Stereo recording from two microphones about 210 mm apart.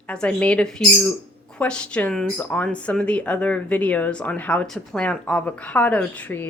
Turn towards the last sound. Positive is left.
turn(degrees=10)  # may be behind; listen again after turning